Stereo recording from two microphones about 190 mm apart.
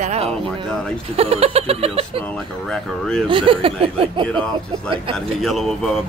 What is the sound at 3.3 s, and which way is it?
A woman's voice, 25° right (ahead or behind).